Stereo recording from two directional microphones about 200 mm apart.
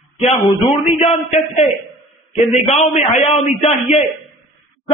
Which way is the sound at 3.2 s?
Centre (ahead or behind).